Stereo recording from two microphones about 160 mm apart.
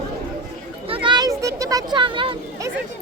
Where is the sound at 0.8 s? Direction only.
35° right (ahead or behind).